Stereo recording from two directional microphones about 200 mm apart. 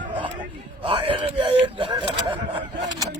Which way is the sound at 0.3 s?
25° right (ahead or behind).